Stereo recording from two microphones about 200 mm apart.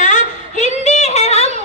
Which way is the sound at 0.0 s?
35° left (ahead or behind).